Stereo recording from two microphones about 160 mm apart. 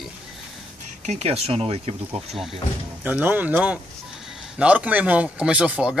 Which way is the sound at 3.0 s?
10° right (ahead or behind).